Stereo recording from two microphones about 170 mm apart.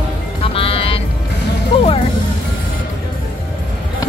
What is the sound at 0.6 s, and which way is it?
Music, 35° left (ahead or behind).